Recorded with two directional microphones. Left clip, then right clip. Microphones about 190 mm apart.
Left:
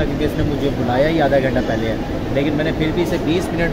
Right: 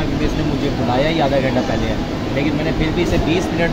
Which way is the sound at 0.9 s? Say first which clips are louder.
Left 2 dB; centre (ahead or behind).